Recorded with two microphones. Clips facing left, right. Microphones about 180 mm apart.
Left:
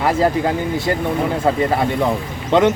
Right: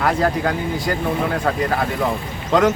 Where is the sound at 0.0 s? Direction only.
25° left (ahead or behind).